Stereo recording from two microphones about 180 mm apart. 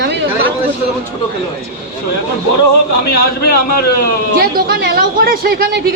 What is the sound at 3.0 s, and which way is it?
Speech, 60° left (ahead or behind).